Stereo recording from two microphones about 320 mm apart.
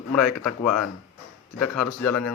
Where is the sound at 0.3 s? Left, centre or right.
Left.